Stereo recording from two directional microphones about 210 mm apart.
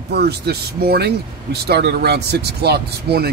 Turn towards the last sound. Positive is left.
turn(degrees=-50)  # may be behind; listen again after turning